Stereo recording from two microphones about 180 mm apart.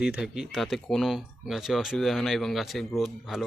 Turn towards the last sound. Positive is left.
turn(degrees=0)  # may be behind; listen again after turning